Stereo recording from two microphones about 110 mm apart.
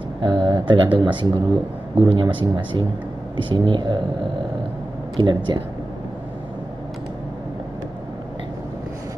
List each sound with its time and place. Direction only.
0.2 s speech: 45° right (ahead or behind)
5.1 s speech: 40° right (ahead or behind)